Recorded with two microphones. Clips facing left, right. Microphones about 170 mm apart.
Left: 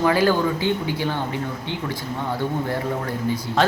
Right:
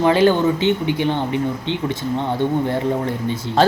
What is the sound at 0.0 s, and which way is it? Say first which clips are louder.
Speech: right 4 dB; 25° right (ahead or behind).